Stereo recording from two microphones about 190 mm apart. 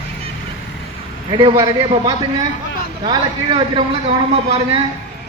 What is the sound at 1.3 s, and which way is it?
A man's voice, 25° right (ahead or behind).